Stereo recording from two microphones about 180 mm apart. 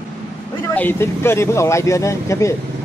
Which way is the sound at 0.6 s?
10° left (ahead or behind).